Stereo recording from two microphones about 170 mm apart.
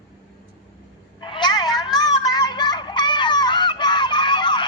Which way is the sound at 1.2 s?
25° left (ahead or behind).